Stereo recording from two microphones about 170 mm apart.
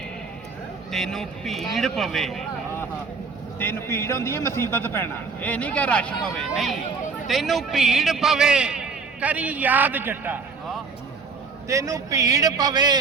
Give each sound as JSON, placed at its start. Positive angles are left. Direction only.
{"t": 0.9, "sound": "a man's voice", "side_deg": 0}
{"t": 3.6, "sound": "a man's voice", "side_deg": 15}
{"t": 11.7, "sound": "a man's voice", "side_deg": -20}